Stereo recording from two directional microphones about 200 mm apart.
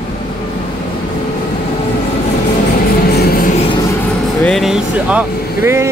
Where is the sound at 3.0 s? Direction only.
50° left (ahead or behind).